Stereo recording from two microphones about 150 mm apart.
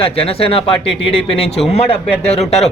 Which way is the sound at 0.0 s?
40° left (ahead or behind).